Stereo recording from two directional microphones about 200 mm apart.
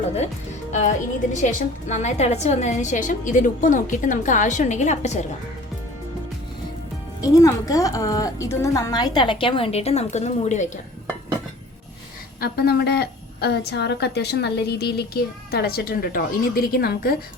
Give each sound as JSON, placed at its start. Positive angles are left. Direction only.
{"t": 0.7, "sound": "a woman's voice", "side_deg": 35}
{"t": 7.2, "sound": "a woman's voice", "side_deg": 15}
{"t": 12.4, "sound": "a woman's voice", "side_deg": 50}